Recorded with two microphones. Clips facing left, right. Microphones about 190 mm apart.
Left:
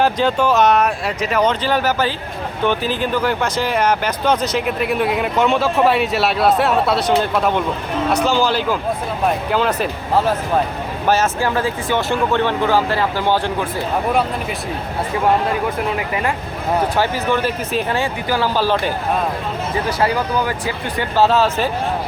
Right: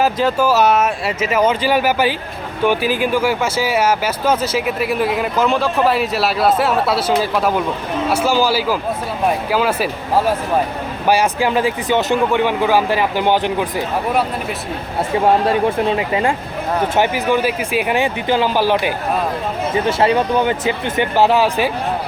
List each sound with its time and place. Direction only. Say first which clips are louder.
0.0 s speech: even; 5° right (ahead or behind)
15.6 s speech: right 4 dB; 30° right (ahead or behind); by 18.9 s 15° right (ahead or behind)
19.7 s speech: right 4 dB; 25° right (ahead or behind)